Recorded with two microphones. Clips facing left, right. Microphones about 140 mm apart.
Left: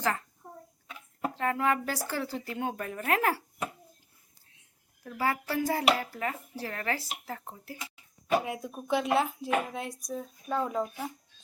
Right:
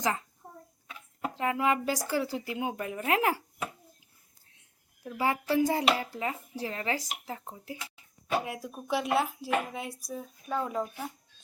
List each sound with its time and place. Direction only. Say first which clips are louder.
0.0 s a child's voice: even; 15° right (ahead or behind)
1.3 s speech: right 1 dB; 15° right (ahead or behind)
5.0 s speech: right 2 dB; 15° right (ahead or behind)
8.4 s speech: left 2 dB; centre (ahead or behind)